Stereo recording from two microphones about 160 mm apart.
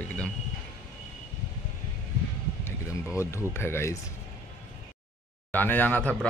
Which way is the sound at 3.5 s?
15° left (ahead or behind).